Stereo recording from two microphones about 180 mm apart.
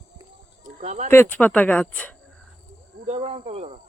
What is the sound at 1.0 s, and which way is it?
Speech, 10° left (ahead or behind).